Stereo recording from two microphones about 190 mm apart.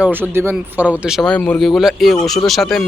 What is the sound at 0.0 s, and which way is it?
Speech, 10° right (ahead or behind).